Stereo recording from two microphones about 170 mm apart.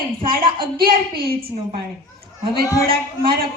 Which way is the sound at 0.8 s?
65° right (ahead or behind).